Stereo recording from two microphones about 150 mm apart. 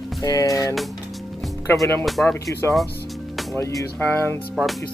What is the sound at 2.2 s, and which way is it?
Speech, 20° left (ahead or behind).